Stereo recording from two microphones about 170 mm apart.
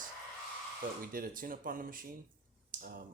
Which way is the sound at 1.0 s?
55° right (ahead or behind).